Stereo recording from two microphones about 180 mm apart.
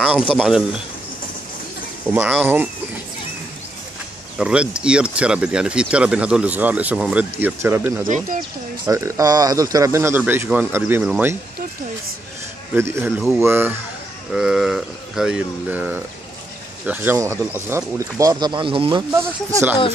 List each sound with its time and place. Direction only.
0.3 s speech: 5° right (ahead or behind)
2.1 s speech: 10° right (ahead or behind)
4.4 s speech: 5° right (ahead or behind)
12.7 s speech: 15° right (ahead or behind)
19.1 s speech: 10° right (ahead or behind)